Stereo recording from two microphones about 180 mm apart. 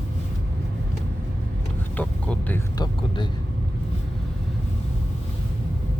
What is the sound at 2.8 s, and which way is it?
Vehicle, 25° left (ahead or behind).